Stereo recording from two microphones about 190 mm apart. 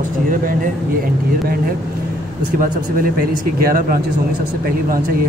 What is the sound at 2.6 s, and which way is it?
A man's voice, 50° right (ahead or behind).